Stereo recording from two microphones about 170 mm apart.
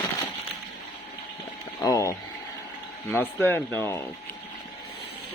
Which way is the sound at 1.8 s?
20° left (ahead or behind).